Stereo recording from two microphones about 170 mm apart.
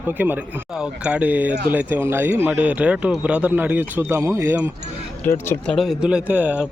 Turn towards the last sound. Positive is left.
turn(degrees=-10)  # may be behind; listen again after turning